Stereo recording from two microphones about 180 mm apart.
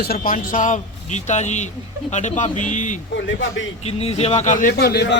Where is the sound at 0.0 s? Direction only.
55° left (ahead or behind).